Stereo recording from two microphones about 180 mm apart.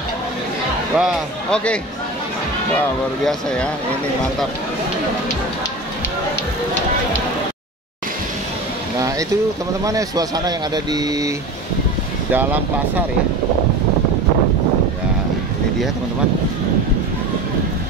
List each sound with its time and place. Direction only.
0.9 s a man's voice: centre (ahead or behind)
3.3 s a man's voice: 5° left (ahead or behind)
9.8 s speech: 20° right (ahead or behind)
12.3 s speech: 10° right (ahead or behind)